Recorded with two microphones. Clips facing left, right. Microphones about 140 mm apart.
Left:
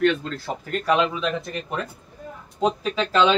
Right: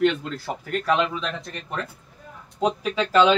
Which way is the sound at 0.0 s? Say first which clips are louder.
Left 1 dB; 20° right (ahead or behind).